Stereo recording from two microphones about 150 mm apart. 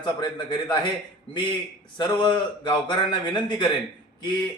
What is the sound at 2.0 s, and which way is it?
A man's voice, 30° left (ahead or behind).